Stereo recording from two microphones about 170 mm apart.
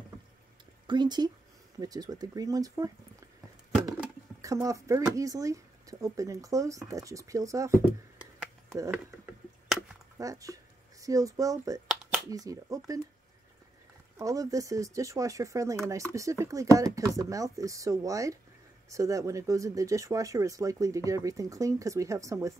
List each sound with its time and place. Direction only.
0.8 s speech: 25° right (ahead or behind)
4.4 s speech: 20° right (ahead or behind)
8.7 s a sound: 15° right (ahead or behind)
10.1 s speech: 20° right (ahead or behind)
11.9 s a sound: 5° right (ahead or behind)
12.3 s speech: 20° right (ahead or behind)
14.1 s speech: 20° right (ahead or behind)